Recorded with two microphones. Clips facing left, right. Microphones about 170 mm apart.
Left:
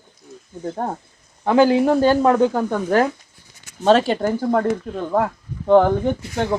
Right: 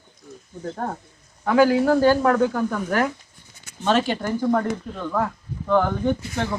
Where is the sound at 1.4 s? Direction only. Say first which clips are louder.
Left 2 dB; 25° left (ahead or behind).